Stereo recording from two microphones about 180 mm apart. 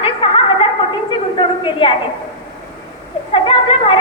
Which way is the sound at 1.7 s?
25° left (ahead or behind).